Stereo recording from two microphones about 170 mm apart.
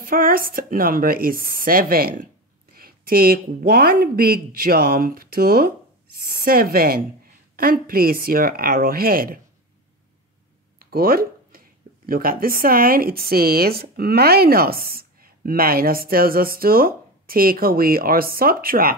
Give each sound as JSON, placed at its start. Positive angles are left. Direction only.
{"t": 0.0, "sound": "speech", "side_deg": -60}
{"t": 6.1, "sound": "speech", "side_deg": 65}
{"t": 6.4, "sound": "speech", "side_deg": -60}
{"t": 10.8, "sound": "a sound", "side_deg": -60}
{"t": 12.1, "sound": "speech", "side_deg": -60}